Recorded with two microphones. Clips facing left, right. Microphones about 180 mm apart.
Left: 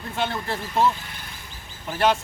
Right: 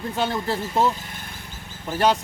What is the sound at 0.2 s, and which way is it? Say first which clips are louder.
Speech: right 2 dB; 40° right (ahead or behind).